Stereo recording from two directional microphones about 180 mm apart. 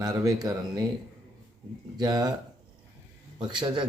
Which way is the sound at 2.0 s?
20° right (ahead or behind).